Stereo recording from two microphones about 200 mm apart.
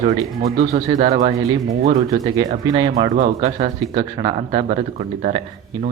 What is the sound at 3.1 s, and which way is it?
Speech, 35° right (ahead or behind).